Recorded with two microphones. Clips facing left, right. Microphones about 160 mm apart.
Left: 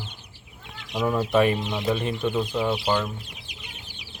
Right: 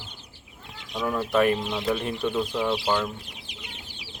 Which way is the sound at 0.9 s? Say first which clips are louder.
Left 2 dB; 15° left (ahead or behind).